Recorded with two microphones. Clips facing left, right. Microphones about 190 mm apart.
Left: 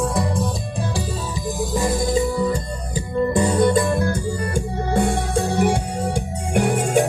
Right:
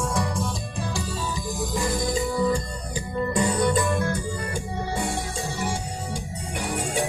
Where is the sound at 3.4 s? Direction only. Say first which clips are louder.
Left 5 dB; 30° left (ahead or behind).